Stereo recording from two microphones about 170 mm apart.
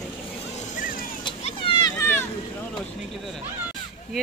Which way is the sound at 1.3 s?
30° left (ahead or behind).